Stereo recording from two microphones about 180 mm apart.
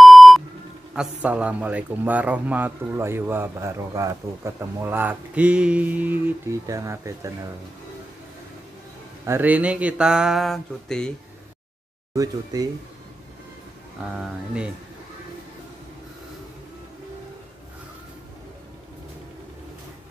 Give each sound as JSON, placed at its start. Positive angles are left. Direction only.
{"t": 0.0, "sound": "beep", "side_deg": 0}
{"t": 0.9, "sound": "speech", "side_deg": -5}
{"t": 9.2, "sound": "speech", "side_deg": -10}
{"t": 12.5, "sound": "speech", "side_deg": -20}
{"t": 14.1, "sound": "speech", "side_deg": -5}